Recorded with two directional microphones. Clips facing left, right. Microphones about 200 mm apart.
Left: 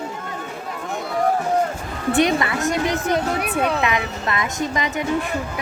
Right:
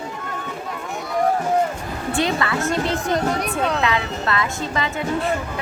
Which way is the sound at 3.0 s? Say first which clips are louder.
Even; 5° left (ahead or behind).